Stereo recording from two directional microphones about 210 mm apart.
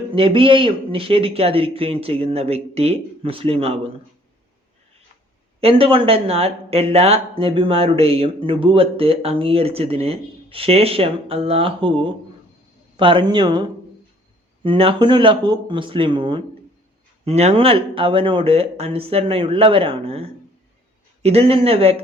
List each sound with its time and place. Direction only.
0.1 s speech: 25° right (ahead or behind)
5.5 s speech: 25° right (ahead or behind)